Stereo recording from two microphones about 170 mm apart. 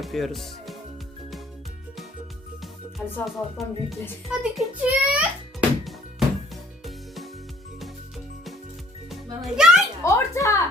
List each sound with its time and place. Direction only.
0.0 s speech: centre (ahead or behind)
3.2 s music: centre (ahead or behind)
9.0 s music: centre (ahead or behind)
10.0 s speech: 20° left (ahead or behind)